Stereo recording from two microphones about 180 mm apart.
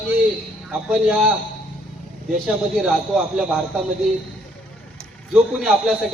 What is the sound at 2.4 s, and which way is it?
Speech, centre (ahead or behind).